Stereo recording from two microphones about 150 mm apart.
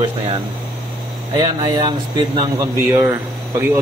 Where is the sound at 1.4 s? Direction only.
25° right (ahead or behind).